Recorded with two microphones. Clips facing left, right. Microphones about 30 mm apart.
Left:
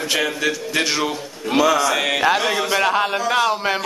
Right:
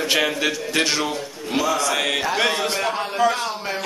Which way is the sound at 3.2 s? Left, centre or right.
Left.